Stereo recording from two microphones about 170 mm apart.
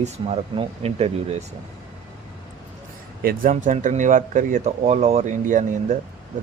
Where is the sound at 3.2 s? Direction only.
55° right (ahead or behind).